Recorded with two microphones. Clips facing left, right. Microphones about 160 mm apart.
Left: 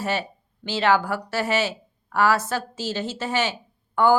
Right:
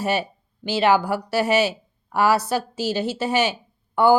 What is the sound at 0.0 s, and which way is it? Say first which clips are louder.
A woman's voice: right 3 dB; 15° right (ahead or behind).